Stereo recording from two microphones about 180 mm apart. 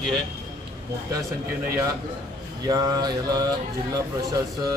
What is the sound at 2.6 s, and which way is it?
Speech, 20° right (ahead or behind).